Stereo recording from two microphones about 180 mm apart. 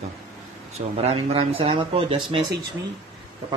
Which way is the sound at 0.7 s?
35° right (ahead or behind).